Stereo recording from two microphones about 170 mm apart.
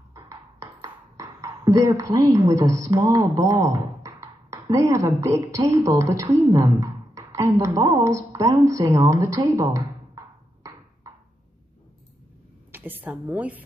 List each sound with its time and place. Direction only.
0.2 s speech: 25° right (ahead or behind)
12.7 s a woman's voice: 10° right (ahead or behind)